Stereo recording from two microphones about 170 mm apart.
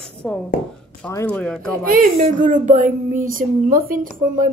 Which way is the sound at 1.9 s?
50° right (ahead or behind).